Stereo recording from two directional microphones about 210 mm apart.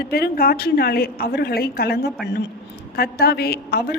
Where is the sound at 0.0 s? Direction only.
45° left (ahead or behind).